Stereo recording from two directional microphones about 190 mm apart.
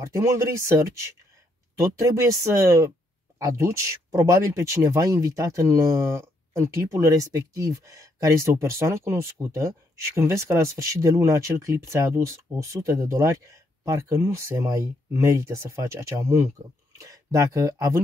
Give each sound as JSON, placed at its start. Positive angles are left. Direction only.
{"t": 0.0, "sound": "speech", "side_deg": -15}